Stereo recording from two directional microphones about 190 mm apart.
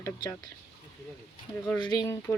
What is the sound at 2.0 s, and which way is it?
Speech, 15° left (ahead or behind).